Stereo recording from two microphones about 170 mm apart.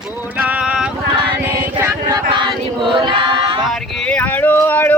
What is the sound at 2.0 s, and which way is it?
Choir, 25° right (ahead or behind).